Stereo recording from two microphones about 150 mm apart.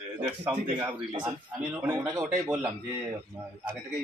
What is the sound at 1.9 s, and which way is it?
Speech, 25° right (ahead or behind).